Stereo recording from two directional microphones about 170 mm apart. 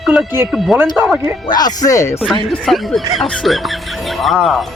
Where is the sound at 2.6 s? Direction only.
Centre (ahead or behind).